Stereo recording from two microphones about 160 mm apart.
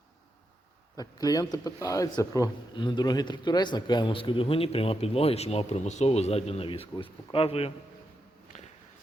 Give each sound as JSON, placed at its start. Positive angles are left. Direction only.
{"t": 0.9, "sound": "speech", "side_deg": 25}
{"t": 8.5, "sound": "walk", "side_deg": 45}